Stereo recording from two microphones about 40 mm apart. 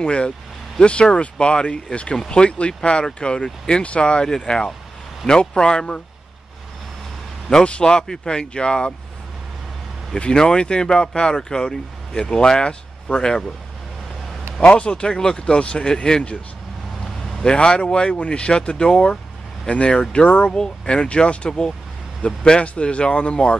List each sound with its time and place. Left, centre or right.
0.0 s speech: left
7.4 s speech: left
10.1 s speech: left
14.6 s speech: left
17.4 s speech: left
20.5 s speech: left